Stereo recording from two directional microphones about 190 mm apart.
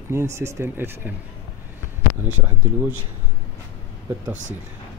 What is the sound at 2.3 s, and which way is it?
Speech, 10° right (ahead or behind).